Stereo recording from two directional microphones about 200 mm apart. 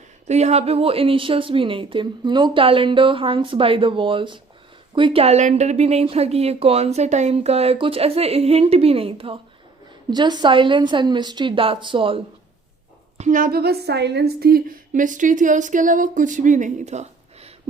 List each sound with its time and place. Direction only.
0.3 s a woman's voice: 35° right (ahead or behind)
13.1 s speech: 40° right (ahead or behind)